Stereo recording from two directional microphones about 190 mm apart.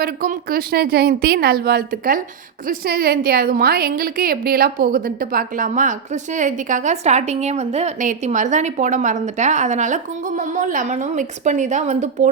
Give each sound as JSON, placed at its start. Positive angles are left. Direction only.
{"t": 0.0, "sound": "a woman's voice", "side_deg": -45}